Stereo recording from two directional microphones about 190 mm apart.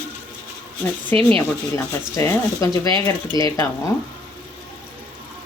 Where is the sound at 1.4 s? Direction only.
15° left (ahead or behind).